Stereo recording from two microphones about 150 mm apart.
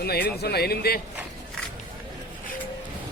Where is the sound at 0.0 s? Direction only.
90° left.